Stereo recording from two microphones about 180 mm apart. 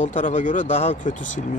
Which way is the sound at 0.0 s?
45° left (ahead or behind).